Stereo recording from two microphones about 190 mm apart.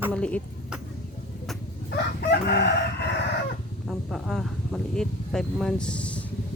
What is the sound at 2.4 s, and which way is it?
Crowing, 60° left (ahead or behind).